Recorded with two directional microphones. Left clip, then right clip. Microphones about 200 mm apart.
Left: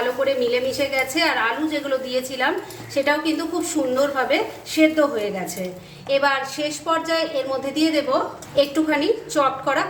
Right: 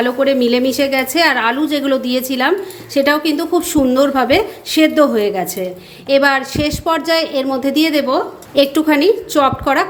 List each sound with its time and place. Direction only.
0.0 s a woman's voice: 50° right (ahead or behind)